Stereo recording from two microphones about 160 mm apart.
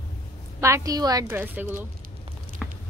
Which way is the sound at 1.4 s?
10° right (ahead or behind).